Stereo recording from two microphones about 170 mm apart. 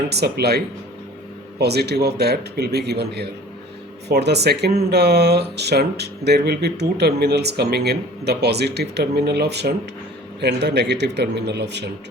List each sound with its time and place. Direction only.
0.1 s speech: 70° right (ahead or behind)
10.4 s speech: 85° right